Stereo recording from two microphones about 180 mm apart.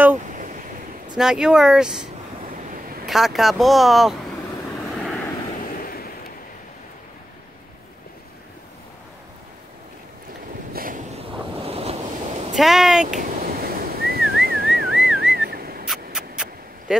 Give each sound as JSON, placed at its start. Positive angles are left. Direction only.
{"t": 1.1, "sound": "speech", "side_deg": -5}
{"t": 3.1, "sound": "speech", "side_deg": 0}
{"t": 5.7, "sound": "a sound", "side_deg": 55}
{"t": 10.7, "sound": "waves", "side_deg": -50}
{"t": 12.5, "sound": "speech", "side_deg": 0}
{"t": 13.2, "sound": "whistling", "side_deg": -55}
{"t": 15.9, "sound": "a sound", "side_deg": 0}